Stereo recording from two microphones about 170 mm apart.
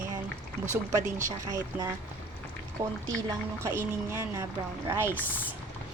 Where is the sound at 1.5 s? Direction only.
20° right (ahead or behind).